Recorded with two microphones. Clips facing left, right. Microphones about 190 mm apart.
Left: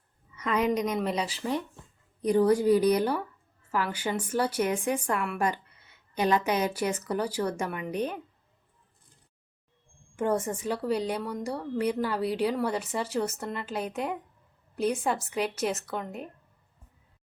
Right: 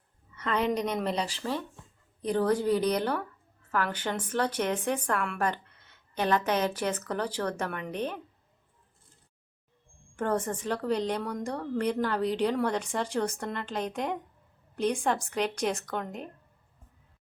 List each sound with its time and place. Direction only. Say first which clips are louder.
0.3 s a sound: left 2 dB; 10° left (ahead or behind)
0.9 s a woman's voice: left 1 dB; 5° left (ahead or behind)
10.2 s a woman's voice: left 2 dB; 10° left (ahead or behind)